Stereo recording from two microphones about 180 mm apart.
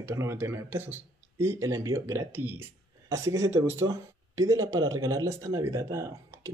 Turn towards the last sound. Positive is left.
turn(degrees=-15)  # may be behind; listen again after turning